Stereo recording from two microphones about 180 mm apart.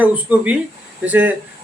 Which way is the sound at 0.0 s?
10° right (ahead or behind).